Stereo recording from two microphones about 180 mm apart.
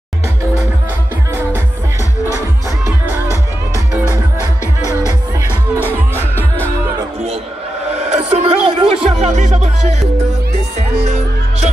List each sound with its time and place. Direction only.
3.1 s music: 15° right (ahead or behind)
8.1 s music: 35° right (ahead or behind)